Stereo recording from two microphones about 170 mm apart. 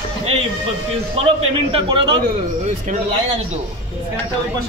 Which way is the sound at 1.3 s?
30° right (ahead or behind).